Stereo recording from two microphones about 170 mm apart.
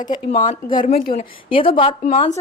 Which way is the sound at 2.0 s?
40° left (ahead or behind).